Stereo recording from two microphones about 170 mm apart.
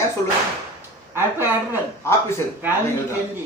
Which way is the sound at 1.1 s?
15° right (ahead or behind).